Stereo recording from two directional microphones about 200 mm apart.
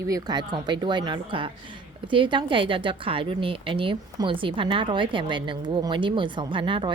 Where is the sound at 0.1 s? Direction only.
20° right (ahead or behind).